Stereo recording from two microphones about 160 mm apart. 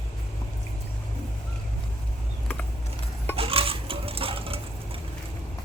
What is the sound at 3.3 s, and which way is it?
Sewing machine, 35° right (ahead or behind).